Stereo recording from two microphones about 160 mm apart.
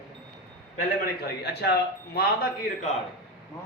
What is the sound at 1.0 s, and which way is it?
Speech, 85° left.